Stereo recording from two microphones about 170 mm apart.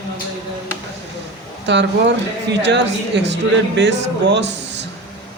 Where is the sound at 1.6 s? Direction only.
90° right.